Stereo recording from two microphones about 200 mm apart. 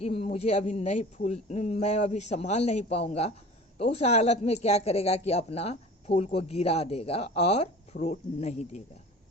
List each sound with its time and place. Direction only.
0.0 s speech: 30° left (ahead or behind)